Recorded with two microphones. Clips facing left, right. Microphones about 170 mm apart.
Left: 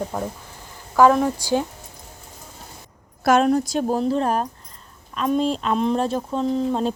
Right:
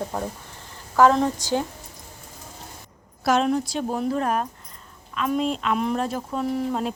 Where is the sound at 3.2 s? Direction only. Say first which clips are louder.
Left 4 dB; 50° left (ahead or behind).